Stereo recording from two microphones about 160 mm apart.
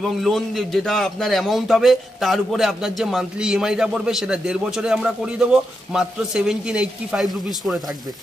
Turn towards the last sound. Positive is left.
turn(degrees=0)  # may be behind; listen again after turning